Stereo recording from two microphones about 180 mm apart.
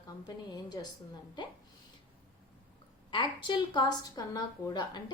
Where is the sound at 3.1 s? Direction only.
25° left (ahead or behind).